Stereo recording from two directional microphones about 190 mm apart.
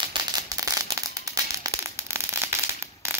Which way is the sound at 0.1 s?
20° right (ahead or behind).